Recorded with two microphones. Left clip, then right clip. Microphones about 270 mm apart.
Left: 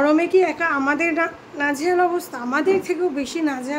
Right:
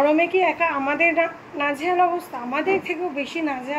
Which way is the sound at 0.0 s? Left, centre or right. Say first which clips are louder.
Left 1 dB; centre.